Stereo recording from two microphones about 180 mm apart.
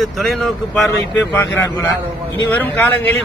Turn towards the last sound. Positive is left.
turn(degrees=10)  # may be behind; listen again after turning